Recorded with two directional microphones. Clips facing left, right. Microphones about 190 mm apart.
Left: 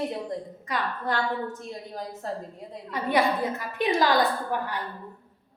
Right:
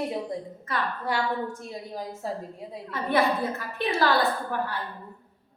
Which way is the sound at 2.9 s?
15° left (ahead or behind).